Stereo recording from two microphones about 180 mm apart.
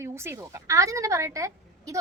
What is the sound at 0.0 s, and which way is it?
A woman's voice, 15° right (ahead or behind).